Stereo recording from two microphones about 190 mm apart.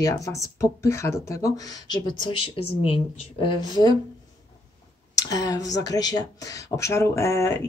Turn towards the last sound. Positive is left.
turn(degrees=15)  # may be behind; listen again after turning